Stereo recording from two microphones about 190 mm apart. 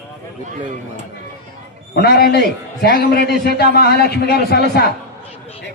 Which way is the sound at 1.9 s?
55° left (ahead or behind).